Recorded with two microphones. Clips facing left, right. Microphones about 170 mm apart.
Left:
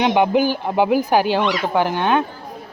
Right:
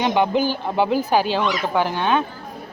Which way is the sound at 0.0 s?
15° left (ahead or behind).